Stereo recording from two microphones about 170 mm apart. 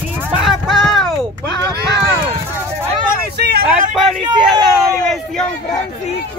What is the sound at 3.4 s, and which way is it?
Vehicle, 75° right (ahead or behind).